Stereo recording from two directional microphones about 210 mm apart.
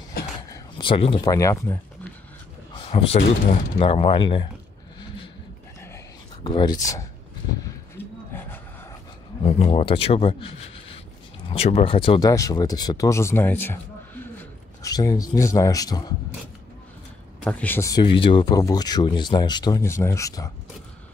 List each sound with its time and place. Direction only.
0.7 s speech: 25° left (ahead or behind)
2.7 s a sound: 25° left (ahead or behind)
3.8 s speech: 25° left (ahead or behind)
6.4 s speech: 20° left (ahead or behind)
8.0 s a sound: 10° left (ahead or behind)
9.4 s speech: 30° left (ahead or behind); by 13.7 s 10° left (ahead or behind)
14.4 s a sound: 15° left (ahead or behind)
15.3 s speech: 15° left (ahead or behind)
17.4 s speech: 5° left (ahead or behind)